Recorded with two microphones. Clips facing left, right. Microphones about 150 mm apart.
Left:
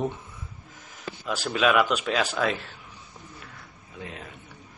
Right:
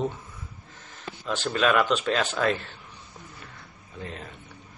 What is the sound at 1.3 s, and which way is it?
A man's voice, 5° left (ahead or behind).